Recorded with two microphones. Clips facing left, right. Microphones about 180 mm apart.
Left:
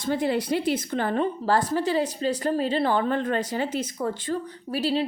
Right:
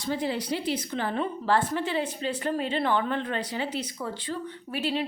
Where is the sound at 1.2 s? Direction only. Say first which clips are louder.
Even; 40° left (ahead or behind).